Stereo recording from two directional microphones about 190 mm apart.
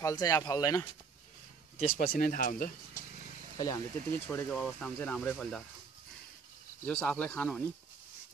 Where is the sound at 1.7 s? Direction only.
30° left (ahead or behind).